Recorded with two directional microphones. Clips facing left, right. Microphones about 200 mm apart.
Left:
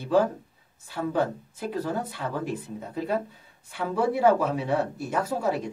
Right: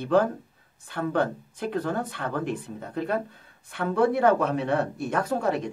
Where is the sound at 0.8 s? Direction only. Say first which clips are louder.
Right 1 dB; 5° left (ahead or behind).